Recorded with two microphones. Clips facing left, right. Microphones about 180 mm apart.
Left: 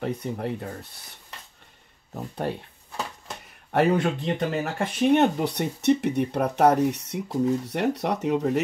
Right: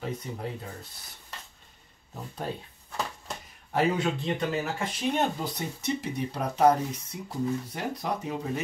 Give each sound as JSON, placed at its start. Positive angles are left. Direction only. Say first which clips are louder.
{"t": 0.0, "sound": "speech", "louder": "left 6 dB", "side_deg": 60}
{"t": 3.7, "sound": "speech", "louder": "left 5 dB", "side_deg": 55}